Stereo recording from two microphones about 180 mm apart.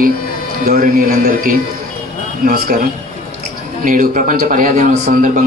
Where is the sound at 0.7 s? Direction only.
50° right (ahead or behind).